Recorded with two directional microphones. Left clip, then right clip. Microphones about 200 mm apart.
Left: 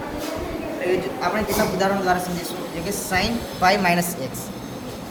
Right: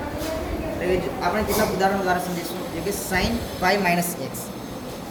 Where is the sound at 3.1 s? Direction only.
60° left (ahead or behind).